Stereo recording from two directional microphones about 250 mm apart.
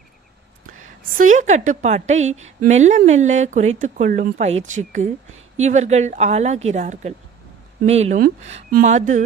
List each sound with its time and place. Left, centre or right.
1.1 s a woman's voice: right